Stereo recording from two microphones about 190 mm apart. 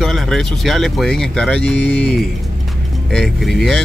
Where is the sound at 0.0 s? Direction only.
Centre (ahead or behind).